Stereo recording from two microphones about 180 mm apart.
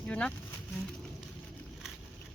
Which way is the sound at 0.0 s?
5° left (ahead or behind).